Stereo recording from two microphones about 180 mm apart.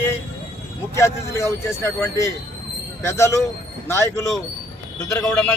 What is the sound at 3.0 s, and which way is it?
Speech, 15° left (ahead or behind).